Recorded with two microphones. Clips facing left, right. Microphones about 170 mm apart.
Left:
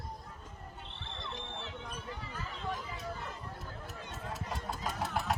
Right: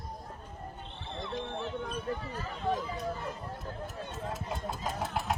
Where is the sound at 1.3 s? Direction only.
50° right (ahead or behind).